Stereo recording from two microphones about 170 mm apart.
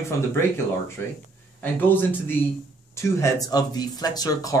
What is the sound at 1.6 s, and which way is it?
Speech, 10° left (ahead or behind).